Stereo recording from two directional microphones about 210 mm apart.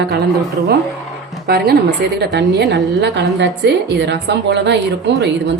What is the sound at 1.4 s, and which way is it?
A woman's voice, 50° right (ahead or behind).